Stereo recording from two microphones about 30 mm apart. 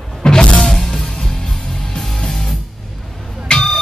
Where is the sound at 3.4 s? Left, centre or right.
Left.